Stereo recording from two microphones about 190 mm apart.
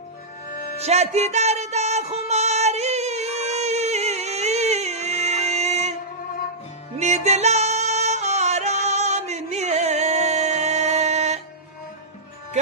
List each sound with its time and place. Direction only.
0.4 s music: 50° left (ahead or behind)
0.9 s music: 35° right (ahead or behind)
7.0 s music: 35° right (ahead or behind)